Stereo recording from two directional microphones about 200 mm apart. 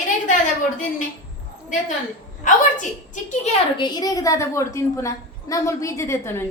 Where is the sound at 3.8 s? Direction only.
20° left (ahead or behind).